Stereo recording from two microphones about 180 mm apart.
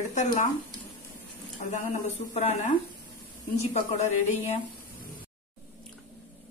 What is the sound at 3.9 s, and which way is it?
Speech, 40° left (ahead or behind).